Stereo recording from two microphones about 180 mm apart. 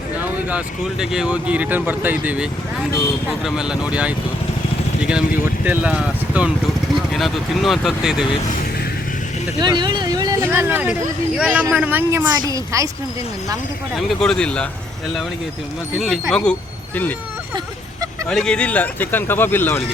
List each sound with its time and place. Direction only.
0.2 s speech: 10° right (ahead or behind)
9.6 s speech: 25° right (ahead or behind)
13.9 s speech: centre (ahead or behind)
16.0 s speech: centre (ahead or behind)
18.3 s speech: 5° left (ahead or behind)